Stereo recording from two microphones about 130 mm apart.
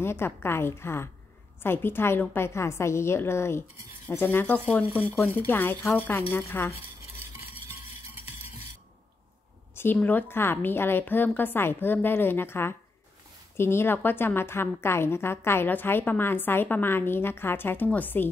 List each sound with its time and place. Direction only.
0.0 s a woman's voice: 20° left (ahead or behind)
9.8 s a woman's voice: 15° left (ahead or behind)